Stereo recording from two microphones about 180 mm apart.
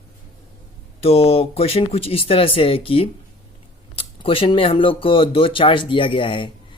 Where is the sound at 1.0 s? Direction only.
35° left (ahead or behind).